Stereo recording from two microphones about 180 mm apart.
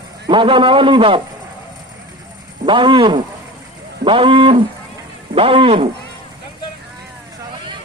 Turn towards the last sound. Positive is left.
turn(degrees=-30)  # may be behind; listen again after turning